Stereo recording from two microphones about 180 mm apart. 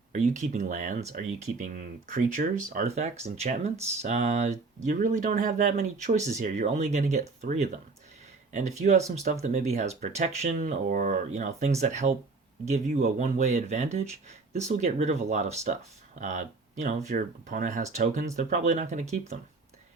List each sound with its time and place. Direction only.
0.1 s speech: 40° right (ahead or behind)